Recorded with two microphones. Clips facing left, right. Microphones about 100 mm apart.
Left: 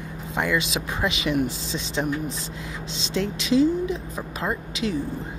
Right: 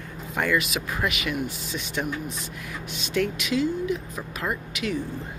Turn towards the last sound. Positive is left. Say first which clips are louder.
# left 2 dB
turn(degrees=30)  # may be behind; listen again after turning